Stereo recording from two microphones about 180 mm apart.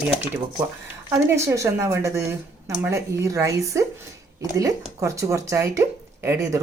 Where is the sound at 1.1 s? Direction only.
15° right (ahead or behind).